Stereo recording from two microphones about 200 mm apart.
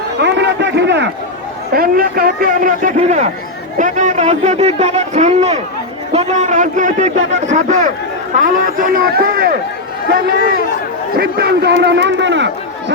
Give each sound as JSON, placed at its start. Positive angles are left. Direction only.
{"t": 0.2, "sound": "run", "side_deg": -60}
{"t": 1.7, "sound": "a man's voice", "side_deg": -45}